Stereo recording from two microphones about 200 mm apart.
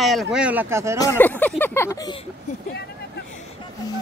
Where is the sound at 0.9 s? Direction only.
15° left (ahead or behind).